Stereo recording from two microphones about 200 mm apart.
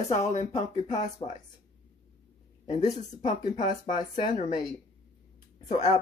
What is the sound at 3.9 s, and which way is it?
Speech, 25° left (ahead or behind).